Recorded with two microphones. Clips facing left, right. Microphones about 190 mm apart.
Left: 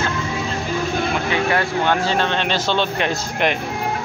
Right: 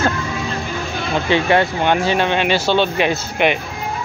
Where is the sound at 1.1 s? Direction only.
25° right (ahead or behind); by 3.5 s 5° right (ahead or behind).